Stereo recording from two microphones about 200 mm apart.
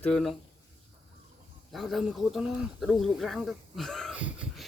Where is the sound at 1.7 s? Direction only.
Centre (ahead or behind).